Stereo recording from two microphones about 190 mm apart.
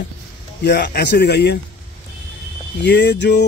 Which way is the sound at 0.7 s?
60° left (ahead or behind).